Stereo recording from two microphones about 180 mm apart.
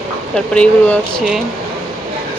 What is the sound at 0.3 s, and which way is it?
Speech, 5° left (ahead or behind).